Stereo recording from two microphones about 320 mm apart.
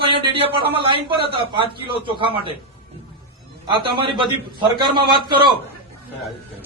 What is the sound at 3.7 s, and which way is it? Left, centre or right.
A man's voice, centre.